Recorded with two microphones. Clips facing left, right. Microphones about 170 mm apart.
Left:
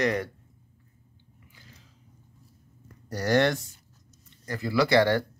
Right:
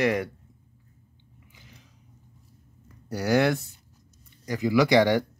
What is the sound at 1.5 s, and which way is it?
Biting, 20° right (ahead or behind).